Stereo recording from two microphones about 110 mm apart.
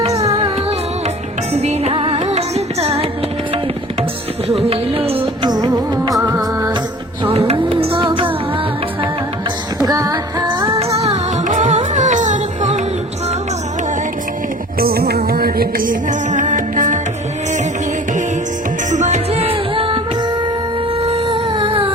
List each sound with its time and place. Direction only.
1.5 s music: 75° right (ahead or behind)
4.6 s music: 65° right (ahead or behind)
5.5 s music of bollywood: 40° right (ahead or behind)
6.2 s music: 25° right (ahead or behind)
7.3 s music: 65° right (ahead or behind)
9.8 s music: 35° right (ahead or behind)
10.8 s music: 65° right (ahead or behind)
11.7 s music: 90° right
18.9 s music: 90° right; by 20.0 s 55° right (ahead or behind)
21.1 s humming: 55° right (ahead or behind)